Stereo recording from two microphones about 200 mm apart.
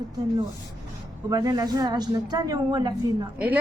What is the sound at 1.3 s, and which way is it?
A woman's voice, 20° right (ahead or behind).